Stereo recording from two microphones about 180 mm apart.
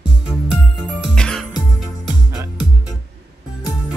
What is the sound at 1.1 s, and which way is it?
Music, 5° left (ahead or behind).